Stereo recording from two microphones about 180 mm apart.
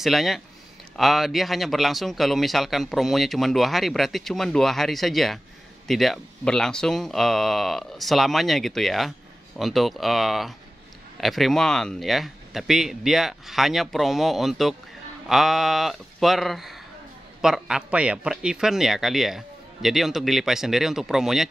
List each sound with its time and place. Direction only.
0.0 s speech: centre (ahead or behind)